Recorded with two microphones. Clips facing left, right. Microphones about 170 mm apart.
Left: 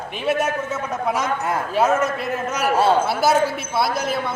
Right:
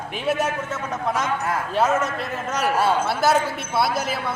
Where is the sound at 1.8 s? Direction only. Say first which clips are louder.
Left 2 dB; 5° left (ahead or behind).